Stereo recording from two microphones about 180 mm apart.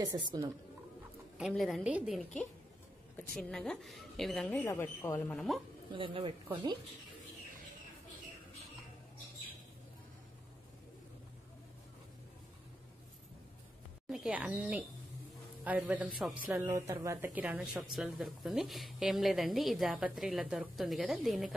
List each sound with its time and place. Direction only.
0.0 s speech: 20° right (ahead or behind)
1.4 s a woman's voice: centre (ahead or behind)
5.9 s speech: 30° right (ahead or behind)
14.1 s a woman's voice: 5° right (ahead or behind)